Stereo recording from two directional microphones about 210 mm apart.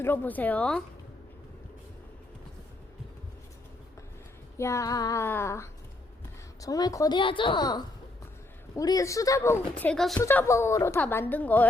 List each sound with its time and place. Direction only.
0.0 s a woman's voice: 10° left (ahead or behind)
4.5 s a woman's voice: 15° left (ahead or behind)